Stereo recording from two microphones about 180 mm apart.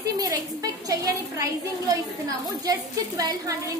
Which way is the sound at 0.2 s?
20° right (ahead or behind).